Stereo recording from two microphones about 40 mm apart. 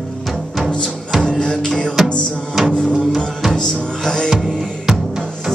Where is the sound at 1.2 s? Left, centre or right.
Left.